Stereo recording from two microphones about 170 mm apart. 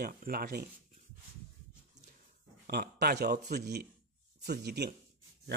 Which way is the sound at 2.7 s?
65° right (ahead or behind).